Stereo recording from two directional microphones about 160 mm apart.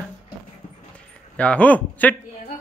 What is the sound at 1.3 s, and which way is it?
Speech, 10° left (ahead or behind).